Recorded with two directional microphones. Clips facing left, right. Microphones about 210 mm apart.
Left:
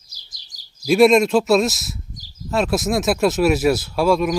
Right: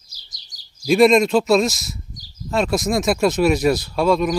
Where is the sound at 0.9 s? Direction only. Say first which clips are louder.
Even; 5° left (ahead or behind).